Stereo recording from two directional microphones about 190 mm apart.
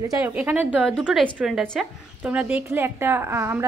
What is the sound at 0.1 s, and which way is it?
A woman's voice, 10° right (ahead or behind).